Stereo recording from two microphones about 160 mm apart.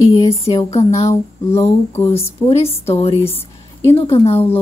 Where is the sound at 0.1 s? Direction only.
35° left (ahead or behind).